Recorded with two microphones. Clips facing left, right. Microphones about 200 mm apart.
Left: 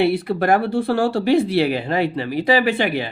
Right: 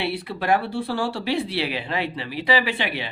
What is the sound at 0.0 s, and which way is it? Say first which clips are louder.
Speech: left 9 dB; 45° left (ahead or behind).